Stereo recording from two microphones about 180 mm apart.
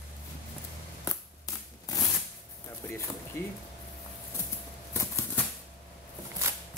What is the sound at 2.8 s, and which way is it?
Speech, 10° left (ahead or behind).